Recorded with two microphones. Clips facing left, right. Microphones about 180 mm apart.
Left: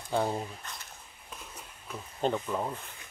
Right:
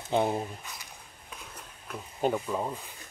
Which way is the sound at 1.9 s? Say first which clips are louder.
Right 2 dB; 10° right (ahead or behind).